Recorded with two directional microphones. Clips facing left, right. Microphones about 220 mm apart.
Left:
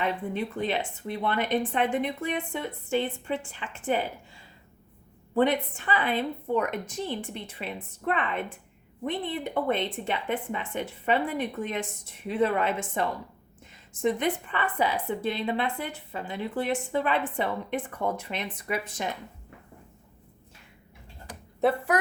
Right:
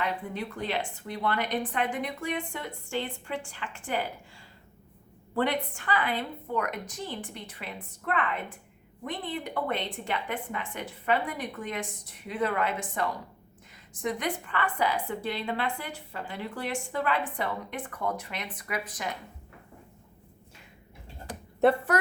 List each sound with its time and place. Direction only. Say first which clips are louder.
0.0 s a woman's voice: left 3 dB; 20° left (ahead or behind)
5.3 s a woman's voice: left 4 dB; 20° left (ahead or behind)
21.6 s speech: right 2 dB; centre (ahead or behind)